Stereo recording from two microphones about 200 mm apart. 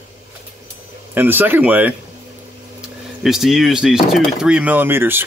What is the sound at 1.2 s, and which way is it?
Speech, 10° right (ahead or behind).